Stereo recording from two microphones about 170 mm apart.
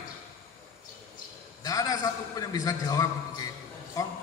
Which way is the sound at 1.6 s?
20° left (ahead or behind).